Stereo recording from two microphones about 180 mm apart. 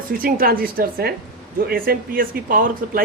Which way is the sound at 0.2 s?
55° right (ahead or behind).